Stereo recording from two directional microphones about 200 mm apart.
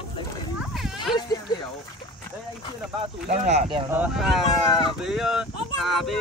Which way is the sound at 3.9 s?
5° right (ahead or behind).